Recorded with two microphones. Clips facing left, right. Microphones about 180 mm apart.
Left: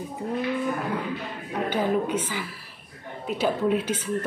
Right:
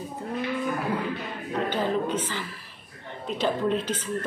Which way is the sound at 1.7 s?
10° left (ahead or behind).